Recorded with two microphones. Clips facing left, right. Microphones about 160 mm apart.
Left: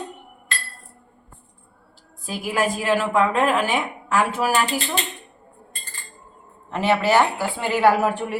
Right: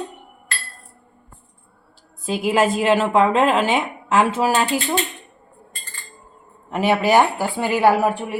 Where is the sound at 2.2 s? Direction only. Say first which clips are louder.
Right 5 dB; 25° right (ahead or behind).